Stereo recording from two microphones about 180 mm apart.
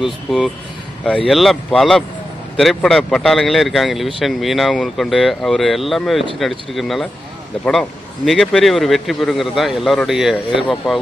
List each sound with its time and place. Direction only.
0.0 s a man's voice: centre (ahead or behind)
8.3 s a man's voice: centre (ahead or behind)